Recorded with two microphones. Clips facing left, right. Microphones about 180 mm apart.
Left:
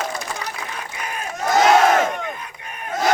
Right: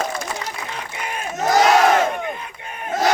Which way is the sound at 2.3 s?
25° right (ahead or behind).